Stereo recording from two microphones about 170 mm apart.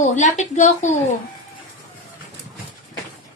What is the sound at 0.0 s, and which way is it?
Speech, 45° left (ahead or behind).